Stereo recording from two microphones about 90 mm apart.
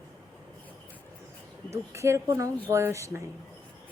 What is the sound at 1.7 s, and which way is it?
A woman's voice, 30° right (ahead or behind).